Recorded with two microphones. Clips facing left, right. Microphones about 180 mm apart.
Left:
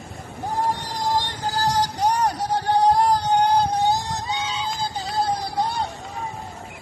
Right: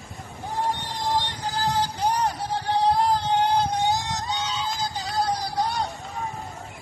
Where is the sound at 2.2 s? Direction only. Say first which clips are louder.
Left 4 dB; 45° left (ahead or behind).